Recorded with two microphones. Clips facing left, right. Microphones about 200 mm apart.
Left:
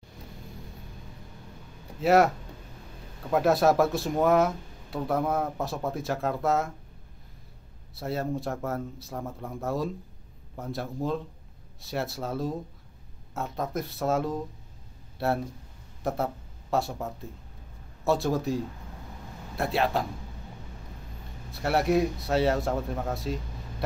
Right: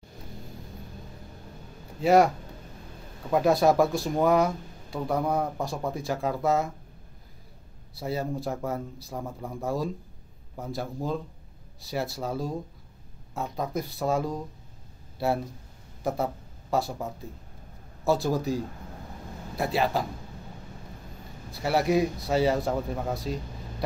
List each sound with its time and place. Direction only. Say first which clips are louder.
2.0 s speech: right 1 dB; centre (ahead or behind)
7.9 s speech: even; centre (ahead or behind)
21.5 s speech: even; centre (ahead or behind)